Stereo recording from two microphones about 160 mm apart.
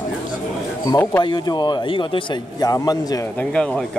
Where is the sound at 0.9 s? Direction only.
20° left (ahead or behind).